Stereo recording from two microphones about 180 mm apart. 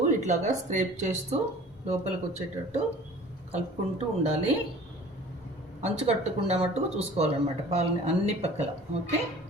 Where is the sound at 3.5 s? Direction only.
35° right (ahead or behind).